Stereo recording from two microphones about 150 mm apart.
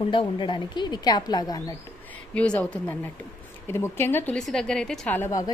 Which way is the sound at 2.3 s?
10° left (ahead or behind).